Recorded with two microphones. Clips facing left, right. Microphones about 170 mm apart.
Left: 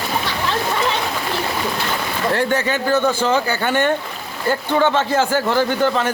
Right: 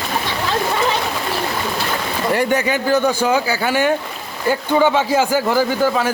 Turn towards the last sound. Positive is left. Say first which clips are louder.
# right 1 dB
turn(degrees=-5)  # may be behind; listen again after turning